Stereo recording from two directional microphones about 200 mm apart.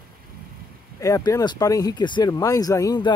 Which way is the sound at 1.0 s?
15° left (ahead or behind).